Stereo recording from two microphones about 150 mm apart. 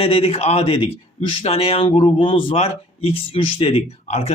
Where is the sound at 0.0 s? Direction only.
40° left (ahead or behind).